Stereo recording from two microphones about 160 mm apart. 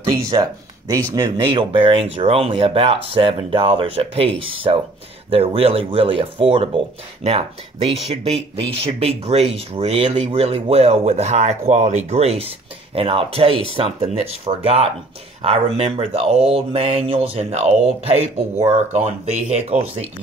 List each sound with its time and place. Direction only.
0.3 s speech: 25° right (ahead or behind)
1.4 s speech: 30° right (ahead or behind)